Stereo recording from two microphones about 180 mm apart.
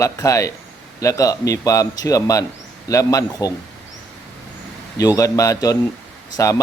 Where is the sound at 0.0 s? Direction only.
15° left (ahead or behind).